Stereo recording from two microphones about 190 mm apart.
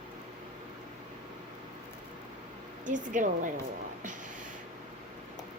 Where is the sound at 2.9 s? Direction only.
40° right (ahead or behind).